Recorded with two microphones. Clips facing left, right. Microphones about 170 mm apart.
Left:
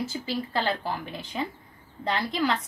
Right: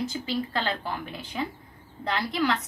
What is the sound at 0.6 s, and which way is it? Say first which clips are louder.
Speech: left 2 dB; 35° left (ahead or behind).